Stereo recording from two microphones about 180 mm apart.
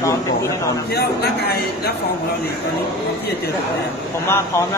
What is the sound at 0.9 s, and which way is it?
A man's voice, 65° left (ahead or behind).